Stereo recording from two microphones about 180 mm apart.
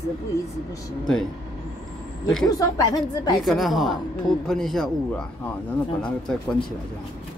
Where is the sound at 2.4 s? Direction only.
20° left (ahead or behind).